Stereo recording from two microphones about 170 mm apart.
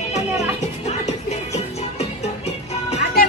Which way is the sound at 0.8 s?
40° left (ahead or behind).